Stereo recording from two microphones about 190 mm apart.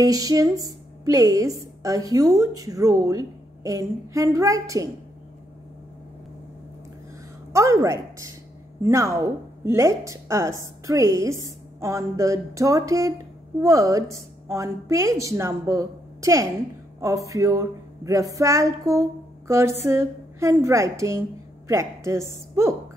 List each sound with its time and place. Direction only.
0.0 s a woman's voice: 20° right (ahead or behind)
7.5 s a woman's voice: 15° right (ahead or behind)